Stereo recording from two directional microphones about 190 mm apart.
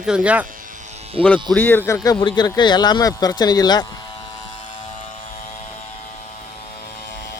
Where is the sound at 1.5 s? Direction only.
10° left (ahead or behind).